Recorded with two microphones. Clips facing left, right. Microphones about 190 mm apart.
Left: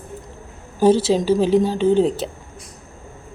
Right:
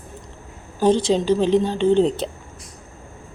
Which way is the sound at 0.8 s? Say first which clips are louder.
Left 2 dB; 5° left (ahead or behind).